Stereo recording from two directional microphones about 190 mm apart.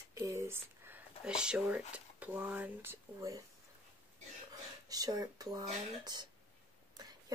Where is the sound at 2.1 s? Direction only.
10° right (ahead or behind).